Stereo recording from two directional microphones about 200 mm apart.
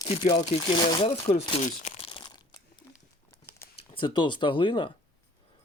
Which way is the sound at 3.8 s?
25° left (ahead or behind).